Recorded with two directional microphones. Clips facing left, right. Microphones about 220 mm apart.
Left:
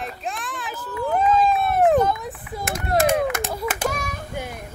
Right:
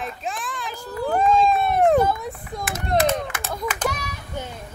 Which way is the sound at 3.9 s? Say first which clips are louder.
Left 4 dB; 50° left (ahead or behind).